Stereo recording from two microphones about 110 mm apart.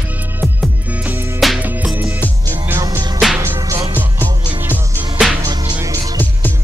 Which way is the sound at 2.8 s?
35° right (ahead or behind).